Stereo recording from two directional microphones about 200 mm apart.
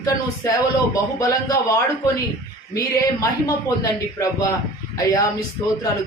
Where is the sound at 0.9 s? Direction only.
15° left (ahead or behind).